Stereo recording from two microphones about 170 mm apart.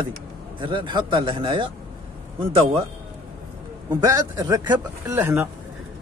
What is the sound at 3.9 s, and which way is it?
A man's voice, 20° right (ahead or behind).